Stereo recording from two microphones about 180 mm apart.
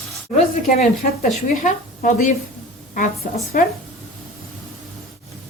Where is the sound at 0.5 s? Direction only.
45° left (ahead or behind).